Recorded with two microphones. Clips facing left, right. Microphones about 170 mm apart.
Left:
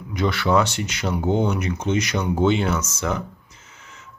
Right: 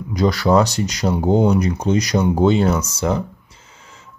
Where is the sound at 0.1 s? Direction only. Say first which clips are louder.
Right 5 dB; 35° right (ahead or behind).